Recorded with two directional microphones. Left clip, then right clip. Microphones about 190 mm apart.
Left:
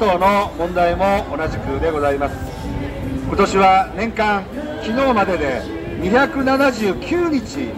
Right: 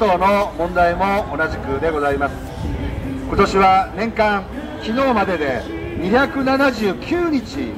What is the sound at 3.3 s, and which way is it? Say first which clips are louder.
A man's voice: even; 25° right (ahead or behind).